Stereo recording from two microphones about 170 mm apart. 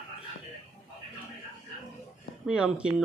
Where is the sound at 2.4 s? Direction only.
5° right (ahead or behind).